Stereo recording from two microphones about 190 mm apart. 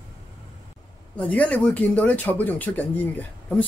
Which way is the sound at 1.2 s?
5° left (ahead or behind).